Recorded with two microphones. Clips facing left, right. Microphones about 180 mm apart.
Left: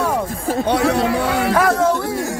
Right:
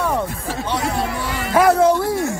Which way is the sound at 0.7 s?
70° left (ahead or behind).